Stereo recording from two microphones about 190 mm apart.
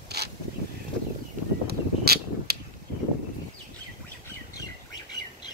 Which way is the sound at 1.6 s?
55° right (ahead or behind).